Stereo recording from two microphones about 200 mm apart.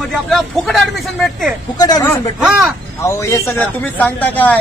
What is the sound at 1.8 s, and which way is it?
A man's voice, 20° left (ahead or behind).